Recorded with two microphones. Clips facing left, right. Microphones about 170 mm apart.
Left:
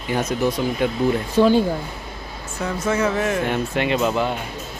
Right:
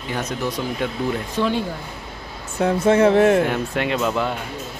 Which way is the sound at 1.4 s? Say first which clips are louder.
Left 7 dB; 40° left (ahead or behind).